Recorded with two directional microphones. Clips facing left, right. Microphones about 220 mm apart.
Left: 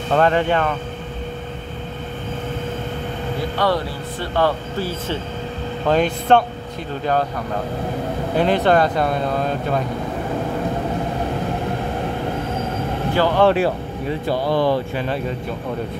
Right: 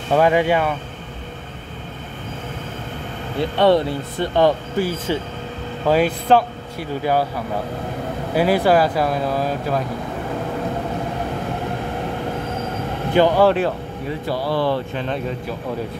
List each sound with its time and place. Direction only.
0.1 s speech: 10° right (ahead or behind)
3.5 s speech: 25° right (ahead or behind); by 9.8 s 5° right (ahead or behind)
13.1 s speech: 20° right (ahead or behind)
14.2 s speech: 20° left (ahead or behind); by 15.3 s 5° left (ahead or behind)